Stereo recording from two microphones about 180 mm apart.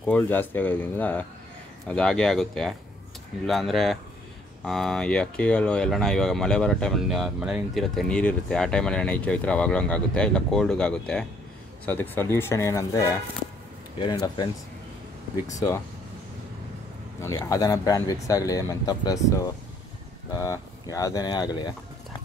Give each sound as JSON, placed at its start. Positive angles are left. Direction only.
{"t": 0.0, "sound": "speech", "side_deg": 10}
{"t": 15.5, "sound": "speech", "side_deg": 20}
{"t": 17.2, "sound": "speech", "side_deg": 15}